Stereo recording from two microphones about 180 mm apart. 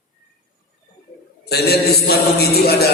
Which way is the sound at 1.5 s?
60° left (ahead or behind).